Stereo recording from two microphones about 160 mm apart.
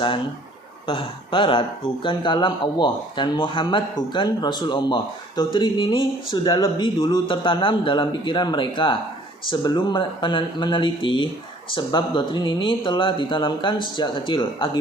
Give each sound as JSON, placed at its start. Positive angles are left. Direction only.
{"t": 0.9, "sound": "speech", "side_deg": 30}